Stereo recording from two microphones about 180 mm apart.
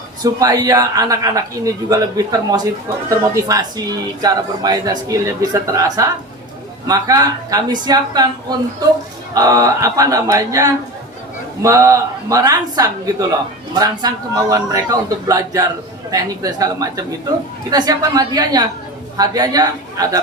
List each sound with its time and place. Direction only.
0.2 s speech: 20° right (ahead or behind)